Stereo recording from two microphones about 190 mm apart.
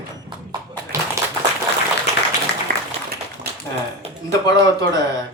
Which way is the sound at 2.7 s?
50° right (ahead or behind).